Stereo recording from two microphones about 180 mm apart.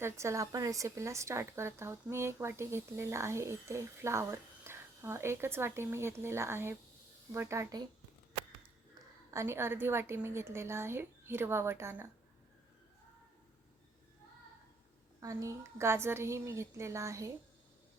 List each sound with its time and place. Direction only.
0.0 s speech: 15° right (ahead or behind)
9.3 s speech: 15° right (ahead or behind)
15.2 s speech: 15° right (ahead or behind)